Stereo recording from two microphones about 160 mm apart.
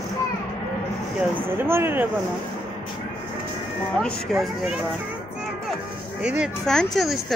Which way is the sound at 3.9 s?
5° left (ahead or behind).